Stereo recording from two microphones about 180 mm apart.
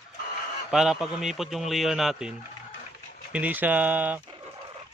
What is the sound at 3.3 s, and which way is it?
Speech, 10° right (ahead or behind).